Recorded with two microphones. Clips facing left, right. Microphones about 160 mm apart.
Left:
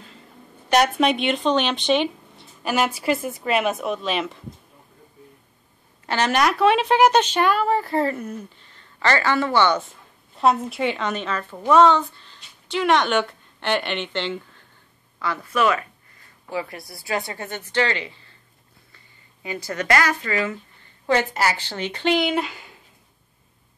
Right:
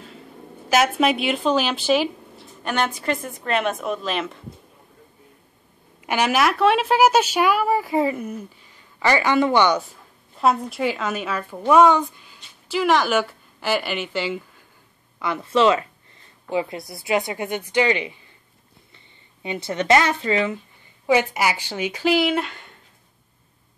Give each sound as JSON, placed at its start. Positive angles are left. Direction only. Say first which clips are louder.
{"t": 0.7, "sound": "speech", "louder": "even", "side_deg": 0}
{"t": 6.0, "sound": "speech", "louder": "right 1 dB", "side_deg": -10}
{"t": 9.8, "sound": "a woman's voice", "louder": "right 1 dB", "side_deg": 0}
{"t": 15.1, "sound": "speech", "louder": "right 3 dB", "side_deg": -20}
{"t": 19.4, "sound": "speech", "louder": "right 3 dB", "side_deg": -25}